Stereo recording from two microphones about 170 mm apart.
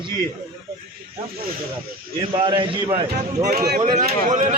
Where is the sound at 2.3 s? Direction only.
30° right (ahead or behind).